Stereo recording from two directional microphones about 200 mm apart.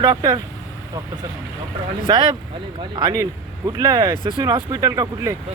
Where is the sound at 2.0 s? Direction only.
25° right (ahead or behind).